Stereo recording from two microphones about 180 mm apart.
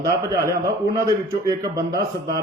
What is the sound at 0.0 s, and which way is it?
A man's voice, 20° right (ahead or behind).